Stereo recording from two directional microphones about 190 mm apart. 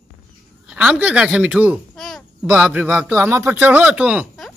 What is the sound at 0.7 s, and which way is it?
A man's voice, 5° right (ahead or behind).